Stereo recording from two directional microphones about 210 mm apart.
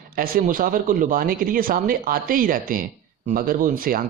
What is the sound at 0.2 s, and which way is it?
Speech, 45° right (ahead or behind).